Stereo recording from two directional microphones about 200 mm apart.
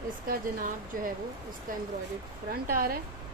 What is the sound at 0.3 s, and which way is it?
Speech, 45° right (ahead or behind).